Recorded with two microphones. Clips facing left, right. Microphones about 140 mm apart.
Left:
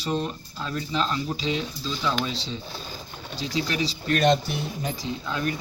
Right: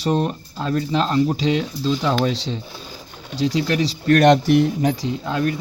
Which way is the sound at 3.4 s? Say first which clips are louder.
Right 8 dB; 70° right (ahead or behind).